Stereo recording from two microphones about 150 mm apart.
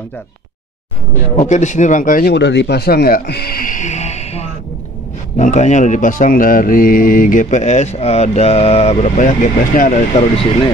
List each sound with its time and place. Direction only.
1.3 s speech: 50° left (ahead or behind)
10.1 s speech: 40° left (ahead or behind)